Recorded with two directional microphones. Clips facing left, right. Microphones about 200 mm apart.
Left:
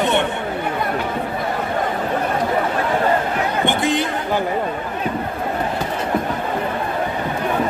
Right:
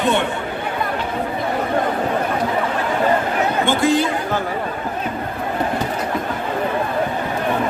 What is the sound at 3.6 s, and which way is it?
Chatter, 20° left (ahead or behind).